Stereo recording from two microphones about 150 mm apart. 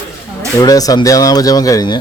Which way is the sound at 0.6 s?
25° left (ahead or behind).